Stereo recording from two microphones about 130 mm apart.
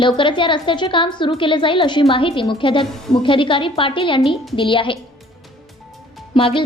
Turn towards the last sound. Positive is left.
turn(degrees=40)  # may be behind; listen again after turning